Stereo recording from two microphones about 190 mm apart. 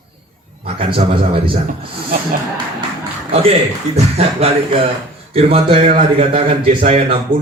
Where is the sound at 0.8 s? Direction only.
30° right (ahead or behind).